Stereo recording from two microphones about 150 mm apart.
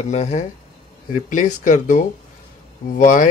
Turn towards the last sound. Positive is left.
turn(degrees=65)  # may be behind; listen again after turning